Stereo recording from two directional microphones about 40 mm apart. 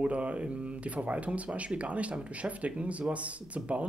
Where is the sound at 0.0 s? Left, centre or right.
Right.